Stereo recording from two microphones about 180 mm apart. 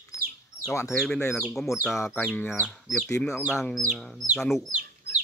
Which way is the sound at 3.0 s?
15° left (ahead or behind).